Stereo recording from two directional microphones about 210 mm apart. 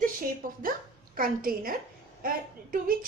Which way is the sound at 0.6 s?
40° right (ahead or behind).